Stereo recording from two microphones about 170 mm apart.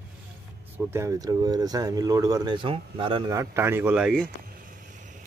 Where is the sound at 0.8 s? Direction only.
15° right (ahead or behind); by 3.3 s 30° right (ahead or behind).